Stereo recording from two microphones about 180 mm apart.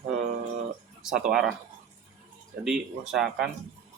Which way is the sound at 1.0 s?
Centre (ahead or behind).